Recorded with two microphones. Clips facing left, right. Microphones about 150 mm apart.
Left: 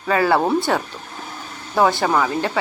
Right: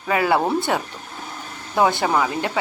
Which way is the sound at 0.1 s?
20° right (ahead or behind).